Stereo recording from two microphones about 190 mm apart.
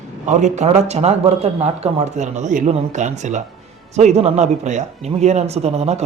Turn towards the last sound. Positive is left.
turn(degrees=-35)  # may be behind; listen again after turning